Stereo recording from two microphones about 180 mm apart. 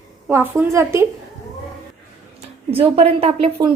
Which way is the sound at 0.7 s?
15° right (ahead or behind).